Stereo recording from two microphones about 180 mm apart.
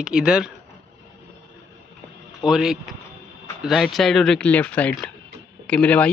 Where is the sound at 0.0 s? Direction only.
5° right (ahead or behind).